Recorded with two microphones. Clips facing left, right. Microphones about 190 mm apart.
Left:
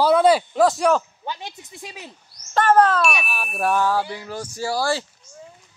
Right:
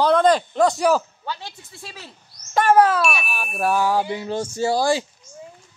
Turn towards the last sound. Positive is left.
turn(degrees=-15)  # may be behind; listen again after turning